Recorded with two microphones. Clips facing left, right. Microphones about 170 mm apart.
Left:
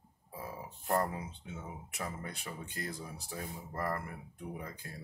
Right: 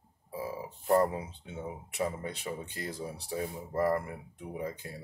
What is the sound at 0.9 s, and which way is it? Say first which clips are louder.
Speech: right 7 dB; 30° right (ahead or behind).